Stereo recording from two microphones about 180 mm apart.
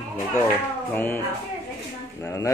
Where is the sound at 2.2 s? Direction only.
15° left (ahead or behind).